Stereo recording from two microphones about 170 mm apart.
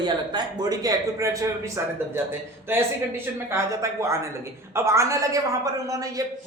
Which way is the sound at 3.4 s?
15° right (ahead or behind).